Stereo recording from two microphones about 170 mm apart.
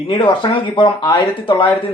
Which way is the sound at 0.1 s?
30° left (ahead or behind).